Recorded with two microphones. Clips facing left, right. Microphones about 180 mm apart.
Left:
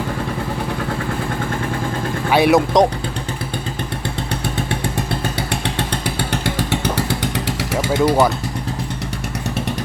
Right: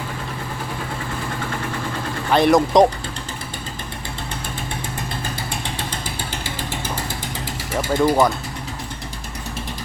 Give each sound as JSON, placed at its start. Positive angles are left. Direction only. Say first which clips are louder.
{"t": 2.3, "sound": "speech", "louder": "left 1 dB", "side_deg": 5}
{"t": 5.4, "sound": "motorcycle", "louder": "left 6 dB", "side_deg": 70}
{"t": 7.9, "sound": "speech", "louder": "left 1 dB", "side_deg": 5}